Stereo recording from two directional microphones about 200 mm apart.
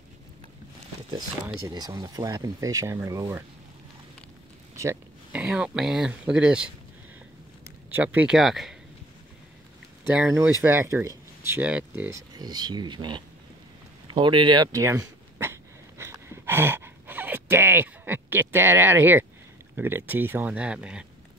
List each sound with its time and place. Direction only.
1.7 s speech: 20° right (ahead or behind)
4.7 s speech: 10° right (ahead or behind)
7.9 s speech: 10° right (ahead or behind)
10.0 s speech: 10° right (ahead or behind)
12.4 s speech: 20° right (ahead or behind)
14.0 s a sound: 25° right (ahead or behind)
19.7 s speech: 10° right (ahead or behind)